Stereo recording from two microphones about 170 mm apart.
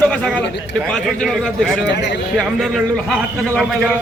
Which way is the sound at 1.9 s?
90° left.